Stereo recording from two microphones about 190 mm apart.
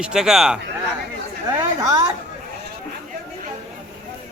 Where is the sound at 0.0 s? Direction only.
5° right (ahead or behind).